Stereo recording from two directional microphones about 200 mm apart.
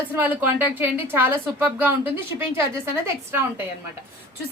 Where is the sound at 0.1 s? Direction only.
10° right (ahead or behind).